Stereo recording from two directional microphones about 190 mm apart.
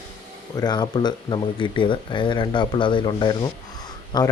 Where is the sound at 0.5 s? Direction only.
20° left (ahead or behind).